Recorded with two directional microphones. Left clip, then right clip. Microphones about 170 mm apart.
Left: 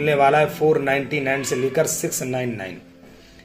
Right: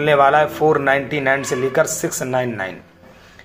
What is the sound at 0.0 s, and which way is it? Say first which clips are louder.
A man's voice: right 3 dB; 40° right (ahead or behind).